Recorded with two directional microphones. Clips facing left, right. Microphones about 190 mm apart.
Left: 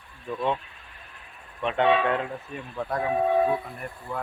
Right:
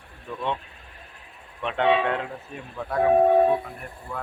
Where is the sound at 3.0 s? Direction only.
45° right (ahead or behind).